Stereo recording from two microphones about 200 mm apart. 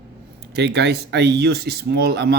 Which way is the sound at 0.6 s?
60° right (ahead or behind).